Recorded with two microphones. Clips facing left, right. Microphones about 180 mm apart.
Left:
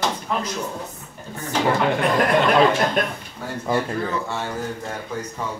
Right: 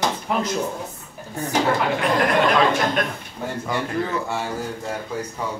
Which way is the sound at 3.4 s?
15° right (ahead or behind).